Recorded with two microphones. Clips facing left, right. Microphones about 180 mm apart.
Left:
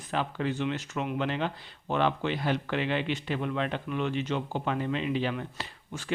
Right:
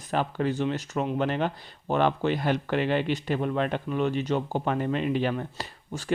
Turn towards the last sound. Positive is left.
turn(degrees=-35)  # may be behind; listen again after turning